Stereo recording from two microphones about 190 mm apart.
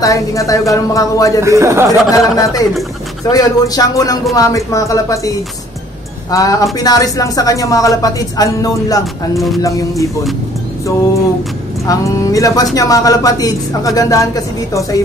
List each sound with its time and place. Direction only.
0.0 s speech: 15° left (ahead or behind)
1.4 s speech: 15° right (ahead or behind)
1.9 s speech: 20° left (ahead or behind)
6.3 s speech: 15° left (ahead or behind)
11.8 s speech: 15° left (ahead or behind)